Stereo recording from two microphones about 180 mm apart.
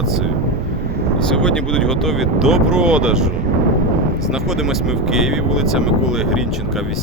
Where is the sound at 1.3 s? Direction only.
5° left (ahead or behind).